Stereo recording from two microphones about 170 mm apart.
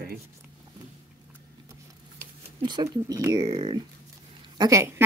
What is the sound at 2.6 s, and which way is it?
A woman's voice, 25° right (ahead or behind).